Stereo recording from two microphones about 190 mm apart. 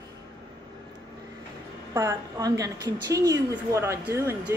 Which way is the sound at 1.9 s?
15° right (ahead or behind).